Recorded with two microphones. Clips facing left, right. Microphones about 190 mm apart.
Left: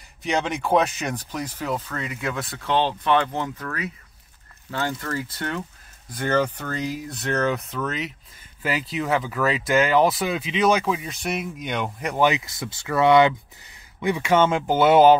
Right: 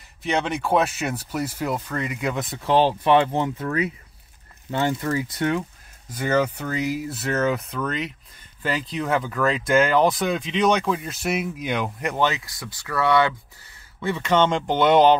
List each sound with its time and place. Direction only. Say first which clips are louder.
0.2 s speech: right 1 dB; centre (ahead or behind)
12.2 s speech: left 4 dB; 15° left (ahead or behind)